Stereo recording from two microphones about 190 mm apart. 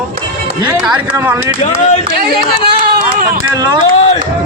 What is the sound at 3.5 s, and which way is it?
Speech, 20° right (ahead or behind).